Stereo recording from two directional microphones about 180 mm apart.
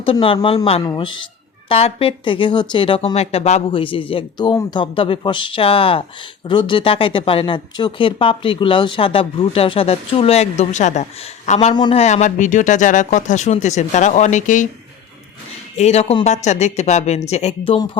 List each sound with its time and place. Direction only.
0.0 s a man's voice: 30° left (ahead or behind)
15.8 s speech: 35° left (ahead or behind)